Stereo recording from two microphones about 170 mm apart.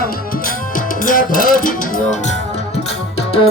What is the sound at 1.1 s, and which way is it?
Music, 55° left (ahead or behind).